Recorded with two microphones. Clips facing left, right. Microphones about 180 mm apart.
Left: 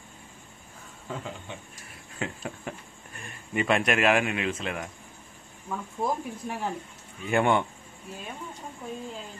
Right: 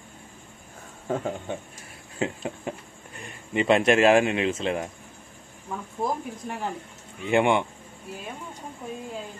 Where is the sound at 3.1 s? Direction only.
20° right (ahead or behind).